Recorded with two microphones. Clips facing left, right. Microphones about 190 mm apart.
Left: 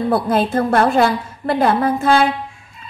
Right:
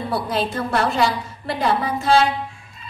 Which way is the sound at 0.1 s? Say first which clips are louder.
Left 6 dB; 55° left (ahead or behind).